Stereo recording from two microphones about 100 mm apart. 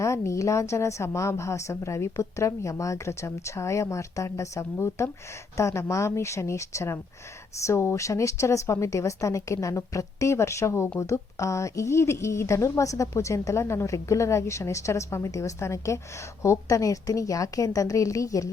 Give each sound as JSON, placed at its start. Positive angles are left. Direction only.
{"t": 0.0, "sound": "a woman's voice", "side_deg": 30}